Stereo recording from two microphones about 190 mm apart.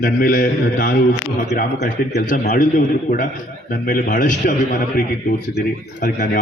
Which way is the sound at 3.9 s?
45° left (ahead or behind).